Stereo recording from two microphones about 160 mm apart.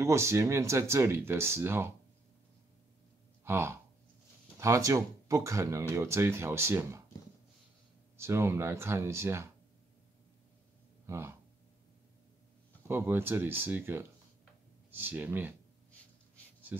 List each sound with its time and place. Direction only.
0.0 s speech: 15° right (ahead or behind)
3.4 s speech: 15° right (ahead or behind)
8.2 s speech: 15° right (ahead or behind)
11.1 s speech: 15° right (ahead or behind)
12.8 s speech: 15° right (ahead or behind)